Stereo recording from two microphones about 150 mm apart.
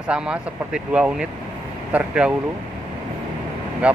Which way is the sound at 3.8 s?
5° right (ahead or behind).